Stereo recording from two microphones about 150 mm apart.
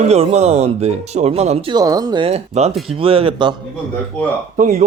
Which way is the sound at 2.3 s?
45° right (ahead or behind).